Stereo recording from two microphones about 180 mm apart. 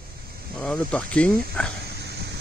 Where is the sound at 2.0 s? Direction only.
65° right (ahead or behind).